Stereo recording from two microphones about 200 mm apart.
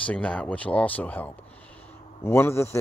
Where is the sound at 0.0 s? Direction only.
5° left (ahead or behind).